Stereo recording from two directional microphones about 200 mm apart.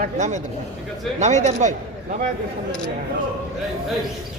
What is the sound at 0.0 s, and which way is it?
Speech, 35° right (ahead or behind).